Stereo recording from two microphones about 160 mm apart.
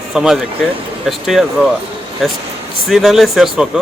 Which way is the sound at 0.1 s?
Centre (ahead or behind).